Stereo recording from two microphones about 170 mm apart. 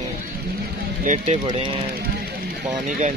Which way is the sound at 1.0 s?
50° right (ahead or behind).